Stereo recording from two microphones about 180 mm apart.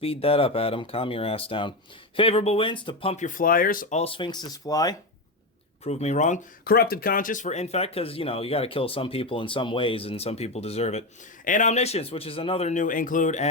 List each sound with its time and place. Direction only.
0.0 s speech: 30° left (ahead or behind)
3.2 s speech: 50° left (ahead or behind); by 4.9 s 20° left (ahead or behind)
5.8 s speech: 35° left (ahead or behind)
6.7 s speech: 55° left (ahead or behind)